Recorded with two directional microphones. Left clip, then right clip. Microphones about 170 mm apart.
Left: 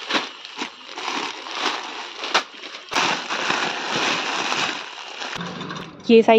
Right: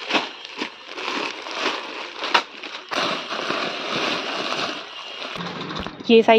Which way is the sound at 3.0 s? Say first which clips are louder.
Left 3 dB; 40° left (ahead or behind).